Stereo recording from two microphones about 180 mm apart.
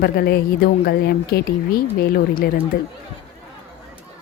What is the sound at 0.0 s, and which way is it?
A woman's voice, 60° left (ahead or behind).